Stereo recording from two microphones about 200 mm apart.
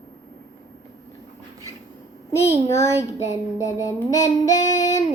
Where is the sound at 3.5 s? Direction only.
15° left (ahead or behind).